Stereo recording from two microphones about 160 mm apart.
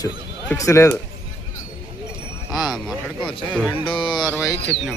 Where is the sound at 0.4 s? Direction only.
20° left (ahead or behind).